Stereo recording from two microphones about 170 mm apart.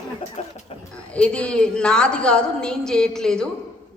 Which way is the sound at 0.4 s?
40° left (ahead or behind).